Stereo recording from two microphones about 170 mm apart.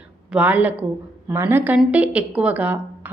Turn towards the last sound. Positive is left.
turn(degrees=-10)  # may be behind; listen again after turning